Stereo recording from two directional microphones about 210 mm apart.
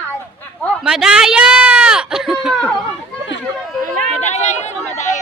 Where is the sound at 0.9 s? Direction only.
5° right (ahead or behind).